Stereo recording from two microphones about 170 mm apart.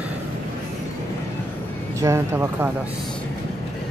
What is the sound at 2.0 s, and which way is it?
Speech, 15° right (ahead or behind).